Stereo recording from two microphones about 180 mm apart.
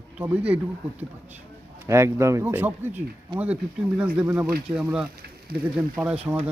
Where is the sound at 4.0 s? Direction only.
5° right (ahead or behind).